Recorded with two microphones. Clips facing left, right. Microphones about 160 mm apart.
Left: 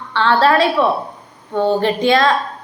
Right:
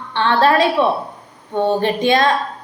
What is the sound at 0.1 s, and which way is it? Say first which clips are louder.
A woman's voice: left 1 dB; 20° right (ahead or behind).